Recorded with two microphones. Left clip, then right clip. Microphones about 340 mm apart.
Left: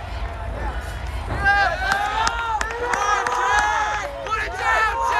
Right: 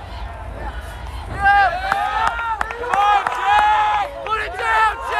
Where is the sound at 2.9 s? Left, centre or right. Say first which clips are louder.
Right 5 dB; centre.